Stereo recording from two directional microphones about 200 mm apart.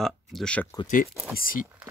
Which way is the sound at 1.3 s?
45° left (ahead or behind).